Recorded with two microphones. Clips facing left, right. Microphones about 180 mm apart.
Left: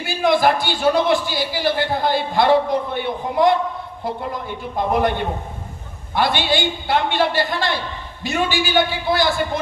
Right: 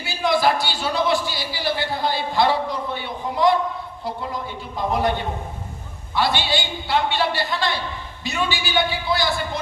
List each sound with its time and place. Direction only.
0.0 s speech: 50° left (ahead or behind)